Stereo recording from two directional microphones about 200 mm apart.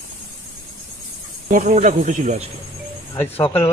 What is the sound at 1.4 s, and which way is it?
Speech, 40° right (ahead or behind).